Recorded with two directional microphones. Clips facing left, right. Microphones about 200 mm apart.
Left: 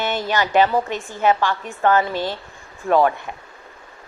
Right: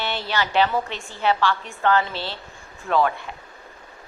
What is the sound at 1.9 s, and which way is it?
Speech, 45° left (ahead or behind).